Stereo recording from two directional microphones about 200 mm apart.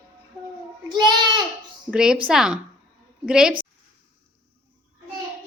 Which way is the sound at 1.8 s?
5° right (ahead or behind).